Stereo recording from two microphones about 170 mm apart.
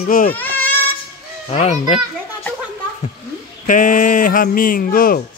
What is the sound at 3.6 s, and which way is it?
Speech, 50° left (ahead or behind).